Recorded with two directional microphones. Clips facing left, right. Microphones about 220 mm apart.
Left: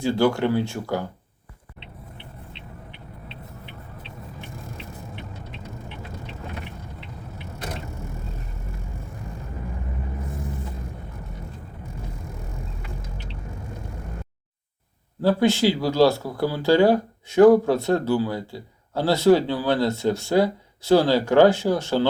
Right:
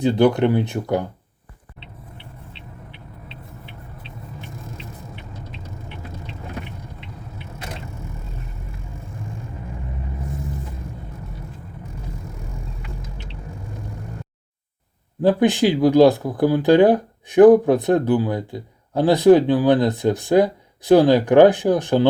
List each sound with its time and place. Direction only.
0.0 s speech: 20° right (ahead or behind)
15.2 s speech: 20° right (ahead or behind)